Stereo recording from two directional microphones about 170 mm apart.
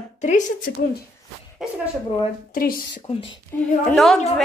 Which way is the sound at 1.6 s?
Centre (ahead or behind).